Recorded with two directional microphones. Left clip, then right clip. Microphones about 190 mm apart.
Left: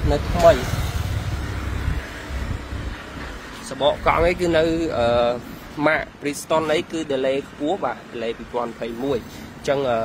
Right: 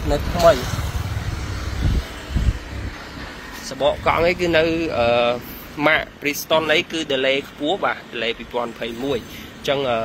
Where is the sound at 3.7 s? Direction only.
Centre (ahead or behind).